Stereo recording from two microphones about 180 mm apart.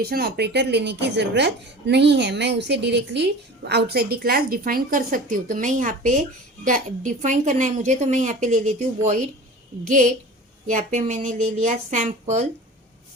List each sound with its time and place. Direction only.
0.0 s a woman's voice: 60° right (ahead or behind); by 9.3 s 40° right (ahead or behind)
10.7 s a woman's voice: 40° right (ahead or behind)